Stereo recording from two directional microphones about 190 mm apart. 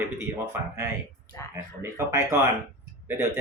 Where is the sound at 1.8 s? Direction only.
15° right (ahead or behind).